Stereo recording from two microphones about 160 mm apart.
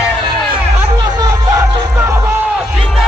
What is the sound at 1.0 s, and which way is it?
Music, 25° right (ahead or behind).